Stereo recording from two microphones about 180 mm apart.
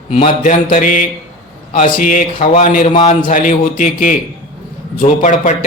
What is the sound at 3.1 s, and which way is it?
Speech, 45° left (ahead or behind).